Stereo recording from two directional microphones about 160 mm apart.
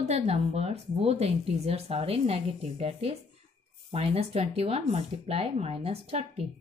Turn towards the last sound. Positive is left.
turn(degrees=-40)  # may be behind; listen again after turning